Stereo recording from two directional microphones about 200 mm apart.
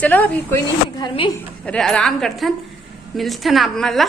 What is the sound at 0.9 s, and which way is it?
Speech, 25° left (ahead or behind).